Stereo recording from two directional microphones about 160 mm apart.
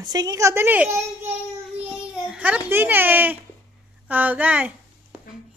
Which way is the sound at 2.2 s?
5° right (ahead or behind).